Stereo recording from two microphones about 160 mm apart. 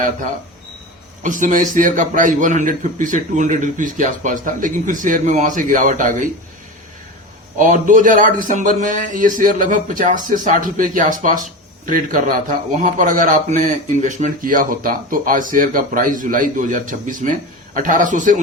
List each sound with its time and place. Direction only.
1.2 s a man's voice: 55° right (ahead or behind)
7.6 s a man's voice: 50° right (ahead or behind)